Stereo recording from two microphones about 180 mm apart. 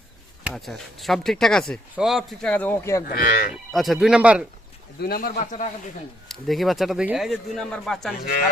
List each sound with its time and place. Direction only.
0.4 s speech: centre (ahead or behind)
3.1 s speech: 55° left (ahead or behind)
3.7 s speech: centre (ahead or behind)
4.9 s speech: 55° left (ahead or behind)
6.2 s speech: centre (ahead or behind)
8.1 s speech: 50° left (ahead or behind)